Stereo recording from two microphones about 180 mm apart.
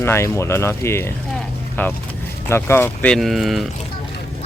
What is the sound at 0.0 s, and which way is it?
Speech, 15° left (ahead or behind).